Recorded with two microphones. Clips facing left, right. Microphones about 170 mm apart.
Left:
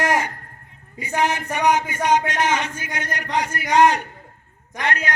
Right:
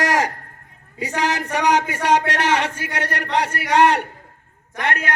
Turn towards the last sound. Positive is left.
turn(degrees=-55)  # may be behind; listen again after turning